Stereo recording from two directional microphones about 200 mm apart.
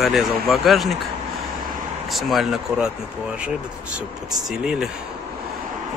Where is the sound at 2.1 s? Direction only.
Centre (ahead or behind).